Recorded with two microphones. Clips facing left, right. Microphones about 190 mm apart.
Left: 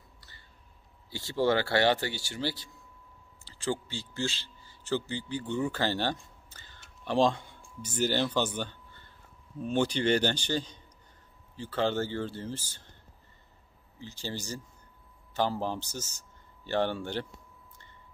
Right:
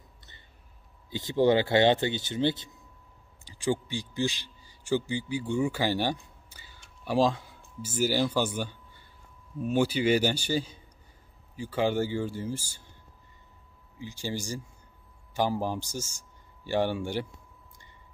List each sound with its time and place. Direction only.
1.1 s speech: 20° right (ahead or behind)
6.5 s a sound: 10° right (ahead or behind)
7.1 s a man's voice: 5° right (ahead or behind)
13.9 s a man's voice: 10° right (ahead or behind)